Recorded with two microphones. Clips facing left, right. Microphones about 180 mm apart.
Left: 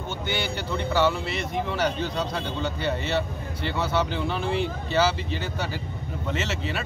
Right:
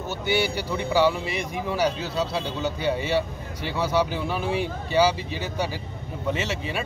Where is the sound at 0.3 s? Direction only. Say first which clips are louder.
Right 5 dB; 10° right (ahead or behind).